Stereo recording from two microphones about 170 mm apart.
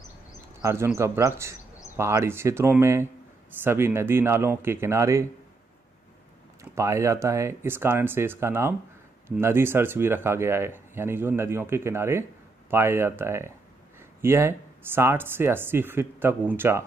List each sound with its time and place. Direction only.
0.6 s speech: 15° right (ahead or behind)
6.6 s speech: 15° right (ahead or behind)